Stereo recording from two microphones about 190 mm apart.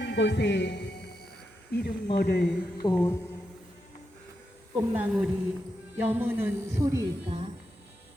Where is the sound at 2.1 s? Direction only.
55° left (ahead or behind).